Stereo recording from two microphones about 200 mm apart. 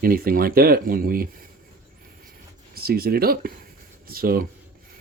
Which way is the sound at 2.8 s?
50° right (ahead or behind).